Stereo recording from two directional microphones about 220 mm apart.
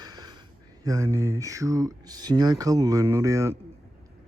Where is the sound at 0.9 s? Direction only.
15° right (ahead or behind).